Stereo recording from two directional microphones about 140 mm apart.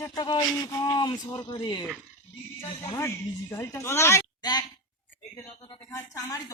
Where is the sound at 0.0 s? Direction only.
25° left (ahead or behind).